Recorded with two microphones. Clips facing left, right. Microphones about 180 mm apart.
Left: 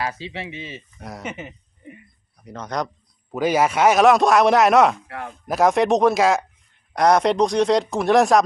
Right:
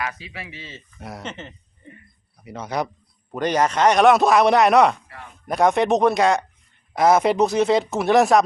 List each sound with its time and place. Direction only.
0.0 s speech: 30° left (ahead or behind)
0.9 s speech: centre (ahead or behind)
1.2 s a sound: 10° left (ahead or behind)
2.4 s a man's voice: 10° right (ahead or behind)
3.3 s speech: 5° left (ahead or behind)
5.0 s speech: 65° left (ahead or behind)
5.5 s speech: centre (ahead or behind)